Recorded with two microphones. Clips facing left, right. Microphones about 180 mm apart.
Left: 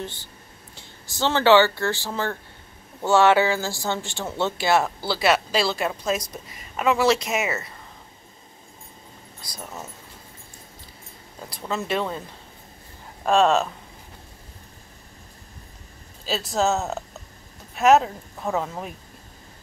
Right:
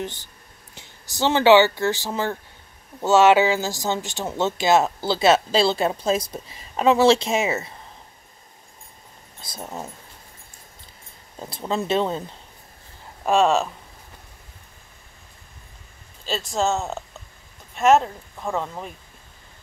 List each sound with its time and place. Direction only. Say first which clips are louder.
0.0 s speech: right 3 dB; 15° right (ahead or behind)
9.4 s speech: right 4 dB; 25° right (ahead or behind)
11.4 s speech: right 4 dB; 25° right (ahead or behind)
13.2 s speech: even; 5° right (ahead or behind)
16.3 s speech: left 1 dB; centre (ahead or behind)